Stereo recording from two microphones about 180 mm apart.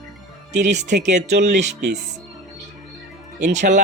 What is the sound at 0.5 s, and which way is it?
Speech, 40° right (ahead or behind).